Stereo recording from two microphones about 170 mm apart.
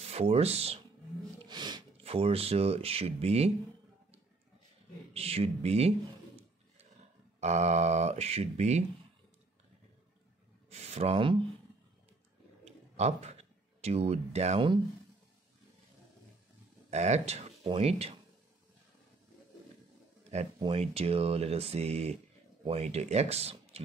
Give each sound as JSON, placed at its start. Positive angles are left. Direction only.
{"t": 0.0, "sound": "speech", "side_deg": -35}
{"t": 1.4, "sound": "speech", "side_deg": -25}
{"t": 5.1, "sound": "speech", "side_deg": -35}
{"t": 7.3, "sound": "speech", "side_deg": -40}
{"t": 10.7, "sound": "speech", "side_deg": -40}
{"t": 12.6, "sound": "a sound", "side_deg": -40}
{"t": 16.9, "sound": "speech", "side_deg": -40}
{"t": 20.5, "sound": "speech", "side_deg": -30}